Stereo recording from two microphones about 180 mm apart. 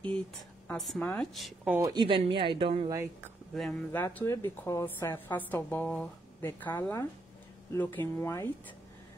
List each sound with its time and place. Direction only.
0.7 s a woman's voice: centre (ahead or behind)
1.8 s speech: 25° right (ahead or behind)
3.5 s a woman's voice: centre (ahead or behind)
4.0 s a woman's voice: 10° left (ahead or behind)